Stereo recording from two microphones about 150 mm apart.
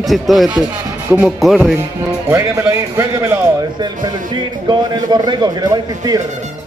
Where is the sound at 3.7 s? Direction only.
30° right (ahead or behind).